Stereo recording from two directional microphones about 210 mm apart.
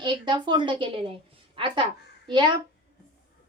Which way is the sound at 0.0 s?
20° right (ahead or behind).